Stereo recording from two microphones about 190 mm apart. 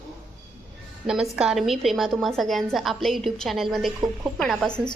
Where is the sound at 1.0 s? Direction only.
5° right (ahead or behind).